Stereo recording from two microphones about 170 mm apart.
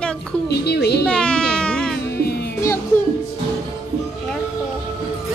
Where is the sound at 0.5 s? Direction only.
75° left (ahead or behind).